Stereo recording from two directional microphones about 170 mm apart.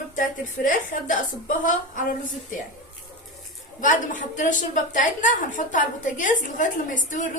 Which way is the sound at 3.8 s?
50° left (ahead or behind).